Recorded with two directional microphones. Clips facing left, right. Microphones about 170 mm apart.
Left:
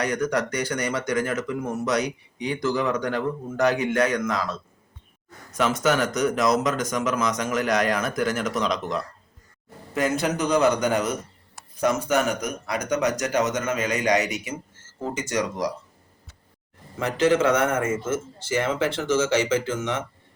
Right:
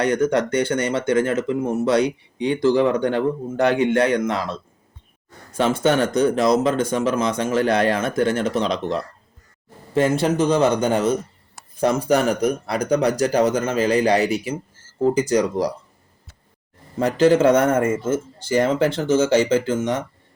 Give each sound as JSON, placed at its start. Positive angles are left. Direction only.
{"t": 0.0, "sound": "speech", "side_deg": -30}
{"t": 9.9, "sound": "speech", "side_deg": -30}
{"t": 17.0, "sound": "speech", "side_deg": -35}